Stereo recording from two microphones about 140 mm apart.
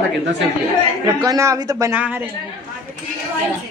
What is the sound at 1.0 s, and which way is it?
Speech, 25° right (ahead or behind).